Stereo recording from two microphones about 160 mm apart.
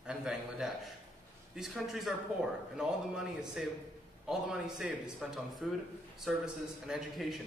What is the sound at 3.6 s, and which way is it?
A man's voice, 5° right (ahead or behind).